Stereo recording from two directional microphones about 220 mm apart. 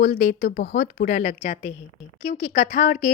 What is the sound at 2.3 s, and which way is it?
Speech, 30° left (ahead or behind).